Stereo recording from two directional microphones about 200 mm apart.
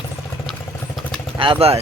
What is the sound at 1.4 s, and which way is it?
Speech, 25° right (ahead or behind).